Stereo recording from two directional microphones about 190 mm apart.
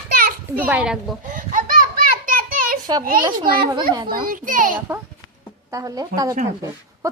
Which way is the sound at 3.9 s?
25° right (ahead or behind).